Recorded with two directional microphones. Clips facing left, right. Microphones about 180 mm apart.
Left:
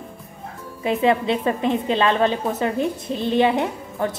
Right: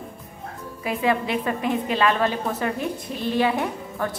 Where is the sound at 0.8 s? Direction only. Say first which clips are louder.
Left 4 dB; 25° left (ahead or behind).